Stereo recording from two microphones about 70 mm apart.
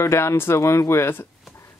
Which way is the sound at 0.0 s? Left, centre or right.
Left.